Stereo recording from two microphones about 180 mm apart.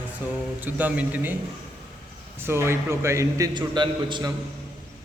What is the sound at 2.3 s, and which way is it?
A man's voice, 15° right (ahead or behind).